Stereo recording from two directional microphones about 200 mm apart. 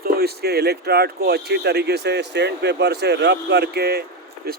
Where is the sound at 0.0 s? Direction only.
50° right (ahead or behind).